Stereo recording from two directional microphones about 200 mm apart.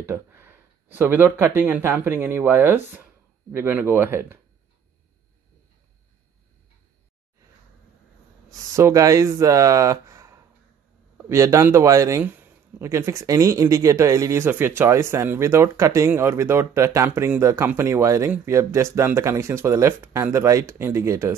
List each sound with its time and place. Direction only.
0.0 s speech: 10° right (ahead or behind)
8.7 s speech: 15° right (ahead or behind)